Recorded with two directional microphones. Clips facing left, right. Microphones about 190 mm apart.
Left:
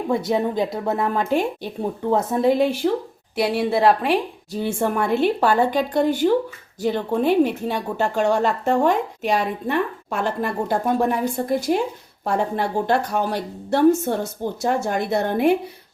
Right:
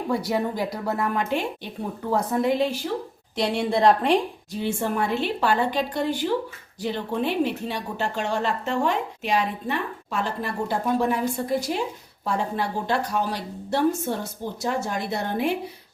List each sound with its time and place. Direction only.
0.1 s speech: 20° left (ahead or behind); by 1.7 s 40° left (ahead or behind)
1.8 s speech: 25° left (ahead or behind)
2.8 s a woman's voice: 70° left (ahead or behind)
3.3 s a woman's voice: 5° left (ahead or behind)
4.6 s a woman's voice: 50° left (ahead or behind)